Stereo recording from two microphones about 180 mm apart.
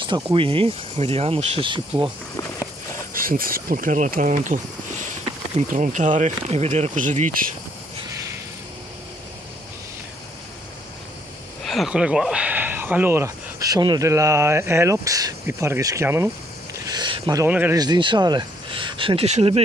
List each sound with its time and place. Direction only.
0.0 s speech: 25° right (ahead or behind)
3.1 s speech: 50° right (ahead or behind)
11.6 s speech: centre (ahead or behind)
16.8 s a sound: 25° right (ahead or behind)
17.5 s speech: 10° right (ahead or behind)
17.7 s speech: 25° right (ahead or behind)